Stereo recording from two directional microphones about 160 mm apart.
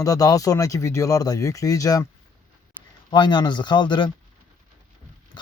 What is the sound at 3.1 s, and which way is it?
Speech, 30° left (ahead or behind).